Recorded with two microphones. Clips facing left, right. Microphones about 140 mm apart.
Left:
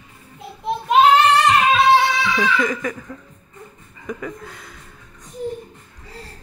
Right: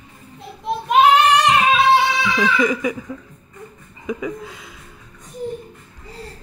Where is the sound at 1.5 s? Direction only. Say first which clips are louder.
Even; centre (ahead or behind).